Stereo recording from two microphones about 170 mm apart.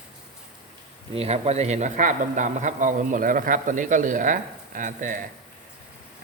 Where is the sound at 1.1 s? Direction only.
35° right (ahead or behind).